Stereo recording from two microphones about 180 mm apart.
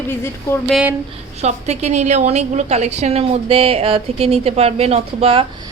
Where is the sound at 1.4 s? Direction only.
35° right (ahead or behind).